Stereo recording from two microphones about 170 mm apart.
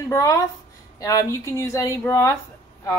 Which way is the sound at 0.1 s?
20° left (ahead or behind).